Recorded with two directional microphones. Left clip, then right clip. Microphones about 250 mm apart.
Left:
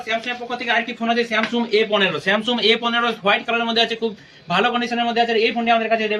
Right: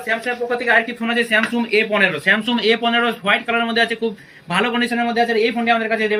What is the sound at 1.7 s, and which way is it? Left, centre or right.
Speech, left.